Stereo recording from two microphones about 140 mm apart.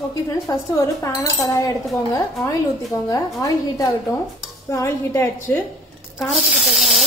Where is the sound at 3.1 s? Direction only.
25° left (ahead or behind).